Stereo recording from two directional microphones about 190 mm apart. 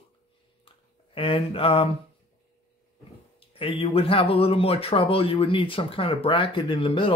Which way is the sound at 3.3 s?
30° left (ahead or behind).